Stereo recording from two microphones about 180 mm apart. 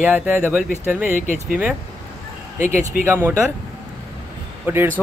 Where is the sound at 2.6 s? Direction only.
40° left (ahead or behind).